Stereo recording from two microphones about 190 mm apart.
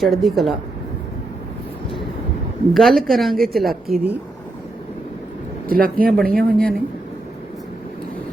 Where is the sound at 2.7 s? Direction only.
Centre (ahead or behind).